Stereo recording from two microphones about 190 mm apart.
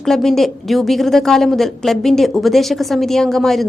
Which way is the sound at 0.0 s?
Centre (ahead or behind).